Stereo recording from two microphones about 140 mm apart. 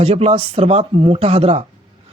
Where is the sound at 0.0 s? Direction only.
45° right (ahead or behind).